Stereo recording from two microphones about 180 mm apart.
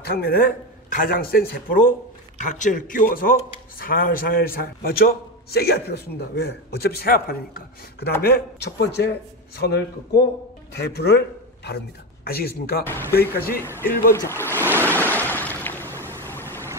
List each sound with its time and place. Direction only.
0.0 s a man's voice: 60° left (ahead or behind)
8.2 s a man's voice: 70° left (ahead or behind)
13.6 s speech: 15° left (ahead or behind)
14.7 s waves: 10° right (ahead or behind)
15.0 s a sound: 10° left (ahead or behind)
16.3 s vehicle: 10° left (ahead or behind)